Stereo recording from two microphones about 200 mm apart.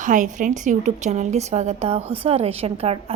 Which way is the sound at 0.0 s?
40° right (ahead or behind).